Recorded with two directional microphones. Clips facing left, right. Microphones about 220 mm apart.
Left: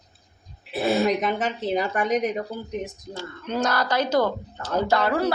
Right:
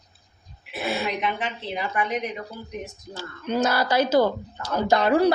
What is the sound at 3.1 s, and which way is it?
Speech, 5° right (ahead or behind).